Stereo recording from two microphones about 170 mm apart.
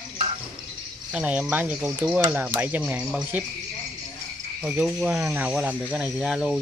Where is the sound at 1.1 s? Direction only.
5° right (ahead or behind).